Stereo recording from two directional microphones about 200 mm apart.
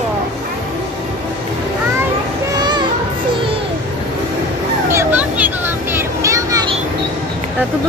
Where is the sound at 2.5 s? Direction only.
20° right (ahead or behind).